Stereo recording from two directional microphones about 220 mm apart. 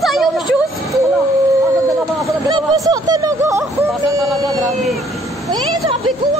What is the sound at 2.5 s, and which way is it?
Music, 20° right (ahead or behind).